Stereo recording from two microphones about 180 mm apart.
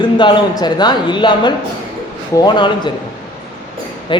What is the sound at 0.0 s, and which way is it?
Speech, 25° left (ahead or behind).